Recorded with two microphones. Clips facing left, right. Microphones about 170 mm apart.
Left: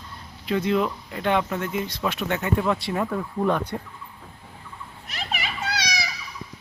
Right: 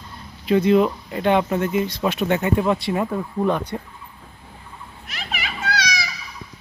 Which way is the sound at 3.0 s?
10° right (ahead or behind).